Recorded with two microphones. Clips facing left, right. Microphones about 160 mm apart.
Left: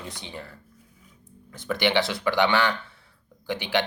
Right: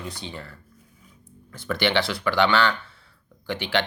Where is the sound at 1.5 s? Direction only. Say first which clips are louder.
Even; 15° left (ahead or behind).